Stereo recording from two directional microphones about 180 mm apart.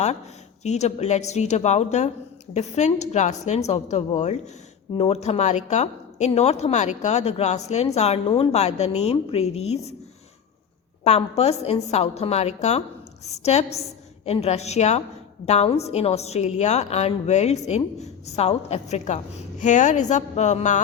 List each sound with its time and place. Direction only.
0.6 s a woman's voice: 40° left (ahead or behind)
11.0 s a woman's voice: 35° left (ahead or behind)